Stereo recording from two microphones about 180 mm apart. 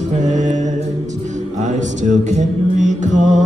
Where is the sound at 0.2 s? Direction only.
40° right (ahead or behind).